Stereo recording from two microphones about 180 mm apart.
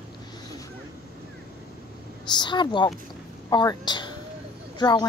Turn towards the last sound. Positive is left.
turn(degrees=25)  # may be behind; listen again after turning